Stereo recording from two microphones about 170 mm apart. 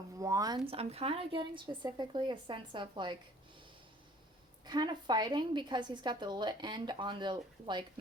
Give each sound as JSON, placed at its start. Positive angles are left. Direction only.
{"t": 0.2, "sound": "a woman's voice", "side_deg": -20}
{"t": 4.6, "sound": "a woman's voice", "side_deg": -25}